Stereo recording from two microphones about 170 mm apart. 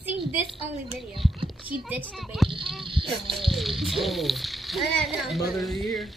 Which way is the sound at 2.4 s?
Centre (ahead or behind).